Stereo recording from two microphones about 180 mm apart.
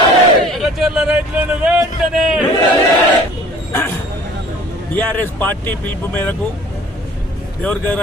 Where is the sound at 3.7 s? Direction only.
15° left (ahead or behind).